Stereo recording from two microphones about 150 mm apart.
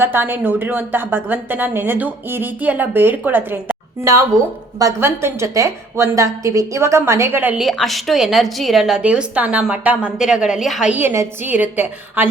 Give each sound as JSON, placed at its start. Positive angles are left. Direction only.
{"t": 0.0, "sound": "a woman's voice", "side_deg": -15}